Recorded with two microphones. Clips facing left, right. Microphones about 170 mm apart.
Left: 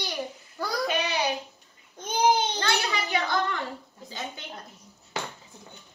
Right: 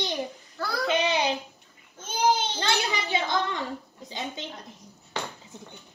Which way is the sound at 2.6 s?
20° right (ahead or behind).